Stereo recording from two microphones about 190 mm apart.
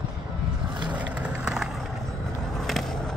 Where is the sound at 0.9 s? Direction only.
5° right (ahead or behind).